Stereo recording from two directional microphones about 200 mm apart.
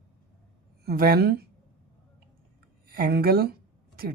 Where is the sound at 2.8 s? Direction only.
45° right (ahead or behind).